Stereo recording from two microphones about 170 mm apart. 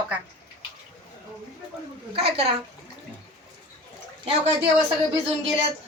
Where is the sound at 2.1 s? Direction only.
75° right (ahead or behind).